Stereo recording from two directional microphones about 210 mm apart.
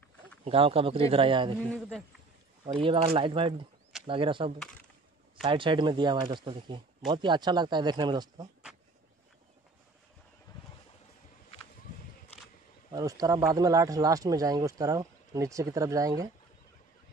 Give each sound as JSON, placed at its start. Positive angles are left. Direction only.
{"t": 0.5, "sound": "speech", "side_deg": -25}
{"t": 2.6, "sound": "speech", "side_deg": -25}
{"t": 10.5, "sound": "boat", "side_deg": 20}
{"t": 12.9, "sound": "speech", "side_deg": -15}